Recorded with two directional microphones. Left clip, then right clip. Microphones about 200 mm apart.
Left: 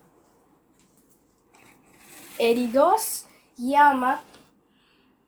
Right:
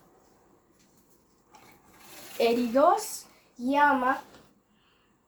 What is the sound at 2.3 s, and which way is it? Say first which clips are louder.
A woman's voice: left 3 dB; 45° left (ahead or behind).